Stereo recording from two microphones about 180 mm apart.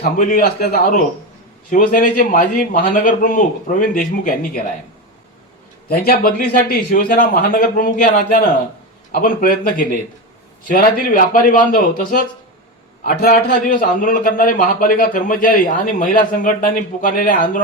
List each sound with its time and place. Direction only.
0.2 s a man's voice: 45° left (ahead or behind)
0.4 s a man's voice: 60° left (ahead or behind)
1.7 s a man's voice: 50° left (ahead or behind)
5.9 s a man's voice: 60° left (ahead or behind)